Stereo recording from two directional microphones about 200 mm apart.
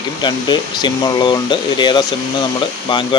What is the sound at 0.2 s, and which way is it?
Speech, 20° left (ahead or behind).